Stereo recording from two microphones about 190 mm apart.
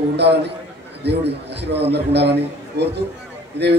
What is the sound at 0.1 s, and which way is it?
A man's voice, 60° right (ahead or behind).